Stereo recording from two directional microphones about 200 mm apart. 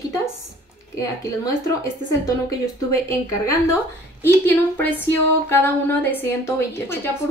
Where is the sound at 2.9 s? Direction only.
15° left (ahead or behind).